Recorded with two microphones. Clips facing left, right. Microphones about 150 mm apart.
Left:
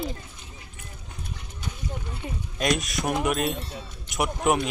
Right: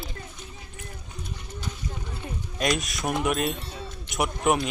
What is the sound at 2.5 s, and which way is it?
Speech, centre (ahead or behind).